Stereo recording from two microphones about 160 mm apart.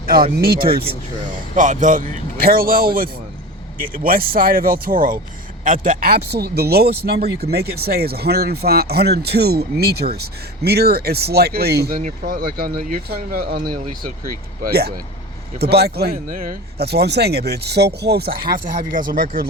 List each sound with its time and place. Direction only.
0.3 s speech: 70° right (ahead or behind)
0.7 s speech: 35° right (ahead or behind)
1.5 s a man's voice: 50° right (ahead or behind); by 11.9 s 85° right
12.0 s speech: 70° right (ahead or behind)